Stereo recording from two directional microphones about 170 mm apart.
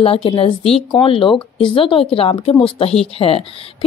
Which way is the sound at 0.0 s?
35° left (ahead or behind).